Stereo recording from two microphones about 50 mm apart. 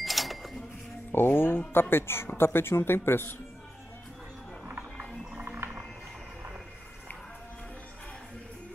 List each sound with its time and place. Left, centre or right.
0.0 s cash register: centre
1.1 s a woman's voice: left
4.6 s music: right
5.6 s a sound: right